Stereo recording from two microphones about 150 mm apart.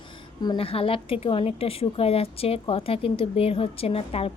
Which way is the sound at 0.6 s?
40° left (ahead or behind).